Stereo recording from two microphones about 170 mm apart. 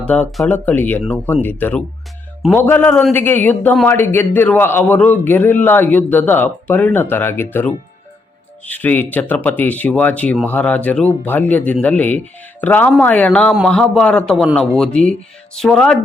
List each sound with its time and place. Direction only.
0.0 s speech: 10° left (ahead or behind)